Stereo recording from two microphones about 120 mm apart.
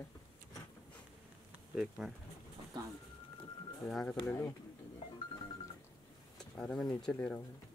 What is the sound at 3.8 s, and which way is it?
Speech, 5° left (ahead or behind).